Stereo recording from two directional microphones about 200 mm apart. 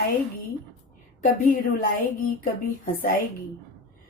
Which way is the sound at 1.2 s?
45° left (ahead or behind).